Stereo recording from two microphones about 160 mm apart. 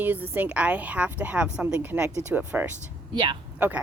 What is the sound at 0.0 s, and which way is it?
Speech, 10° right (ahead or behind).